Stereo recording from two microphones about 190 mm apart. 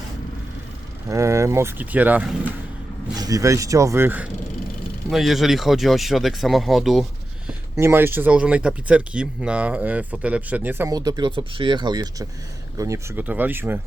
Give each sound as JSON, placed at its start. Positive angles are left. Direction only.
{"t": 1.1, "sound": "speech", "side_deg": -15}
{"t": 7.8, "sound": "speech", "side_deg": -15}